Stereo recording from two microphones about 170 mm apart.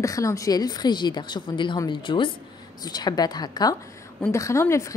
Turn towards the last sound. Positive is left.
turn(degrees=15)  # may be behind; listen again after turning